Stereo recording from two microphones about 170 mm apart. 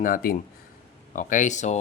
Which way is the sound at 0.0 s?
55° left (ahead or behind).